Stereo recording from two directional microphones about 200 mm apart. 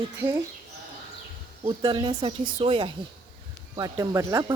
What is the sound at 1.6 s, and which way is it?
Speech, 25° right (ahead or behind).